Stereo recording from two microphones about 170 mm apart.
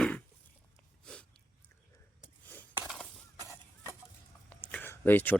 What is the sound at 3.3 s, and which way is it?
Fowl, 20° right (ahead or behind).